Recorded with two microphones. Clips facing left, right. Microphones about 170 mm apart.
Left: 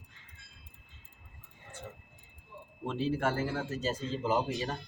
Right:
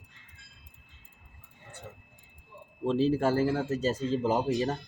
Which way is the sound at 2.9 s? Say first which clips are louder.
Right 6 dB; 35° right (ahead or behind).